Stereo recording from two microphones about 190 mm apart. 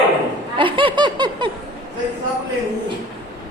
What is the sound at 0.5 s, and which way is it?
Speech, 25° right (ahead or behind).